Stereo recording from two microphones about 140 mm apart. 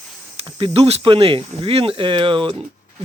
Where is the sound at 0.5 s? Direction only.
40° right (ahead or behind).